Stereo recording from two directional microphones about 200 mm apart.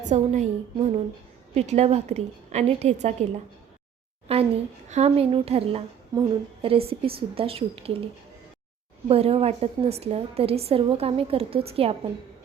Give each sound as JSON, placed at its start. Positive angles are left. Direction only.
{"t": 0.1, "sound": "a woman's voice", "side_deg": -35}
{"t": 4.3, "sound": "a woman's voice", "side_deg": -30}